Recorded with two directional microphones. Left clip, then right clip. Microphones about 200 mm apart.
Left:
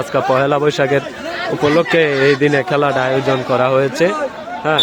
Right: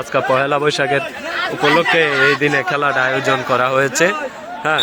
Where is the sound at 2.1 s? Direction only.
20° right (ahead or behind).